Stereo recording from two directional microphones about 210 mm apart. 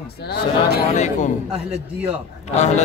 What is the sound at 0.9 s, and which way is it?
Speech, 35° left (ahead or behind).